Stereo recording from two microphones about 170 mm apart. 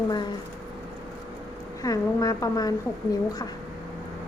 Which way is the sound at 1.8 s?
20° left (ahead or behind).